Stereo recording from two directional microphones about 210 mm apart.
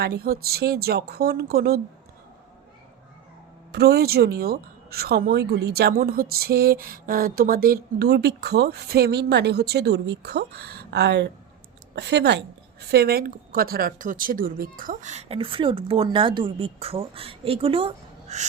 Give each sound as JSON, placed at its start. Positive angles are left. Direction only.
{"t": 0.0, "sound": "speech", "side_deg": -50}
{"t": 3.7, "sound": "a woman's voice", "side_deg": -50}